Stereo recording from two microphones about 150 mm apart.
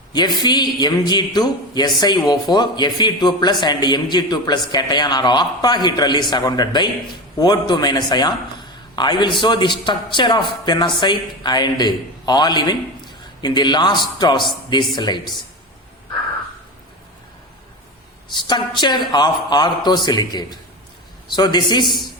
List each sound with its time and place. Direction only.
0.1 s a man's voice: 30° left (ahead or behind)
18.3 s a man's voice: 30° left (ahead or behind)